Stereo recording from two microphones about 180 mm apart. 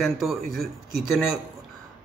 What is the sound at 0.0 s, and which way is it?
A man's voice, centre (ahead or behind).